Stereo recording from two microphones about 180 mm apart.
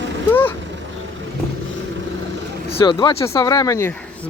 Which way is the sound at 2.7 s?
25° left (ahead or behind).